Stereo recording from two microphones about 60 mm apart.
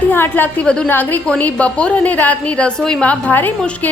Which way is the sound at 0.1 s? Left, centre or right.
Left.